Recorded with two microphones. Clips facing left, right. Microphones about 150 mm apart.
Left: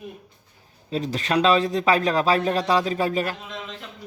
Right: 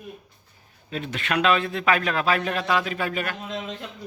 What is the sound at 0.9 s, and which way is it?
A man's voice, 35° left (ahead or behind).